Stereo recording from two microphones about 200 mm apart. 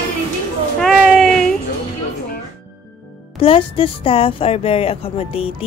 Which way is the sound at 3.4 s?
30° left (ahead or behind).